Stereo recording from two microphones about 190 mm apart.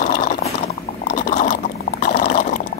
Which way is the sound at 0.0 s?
45° left (ahead or behind).